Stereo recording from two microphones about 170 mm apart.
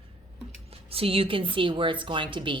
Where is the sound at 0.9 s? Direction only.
35° right (ahead or behind).